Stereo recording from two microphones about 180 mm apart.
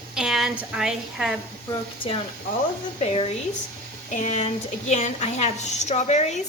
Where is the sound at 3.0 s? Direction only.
35° left (ahead or behind).